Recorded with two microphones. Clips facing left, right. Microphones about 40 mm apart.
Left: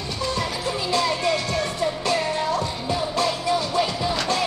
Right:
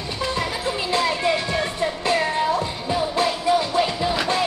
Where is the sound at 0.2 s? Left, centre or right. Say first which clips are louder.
Right 1 dB; right.